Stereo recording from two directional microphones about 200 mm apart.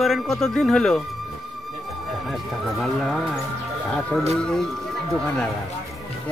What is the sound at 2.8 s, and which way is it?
Speech, centre (ahead or behind).